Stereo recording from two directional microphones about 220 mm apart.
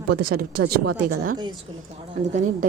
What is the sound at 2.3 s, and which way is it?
Speech, 35° right (ahead or behind).